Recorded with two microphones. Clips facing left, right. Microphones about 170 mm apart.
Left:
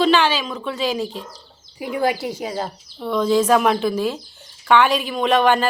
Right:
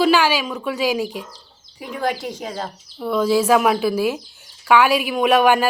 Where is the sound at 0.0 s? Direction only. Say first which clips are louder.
Right 1 dB; 10° right (ahead or behind).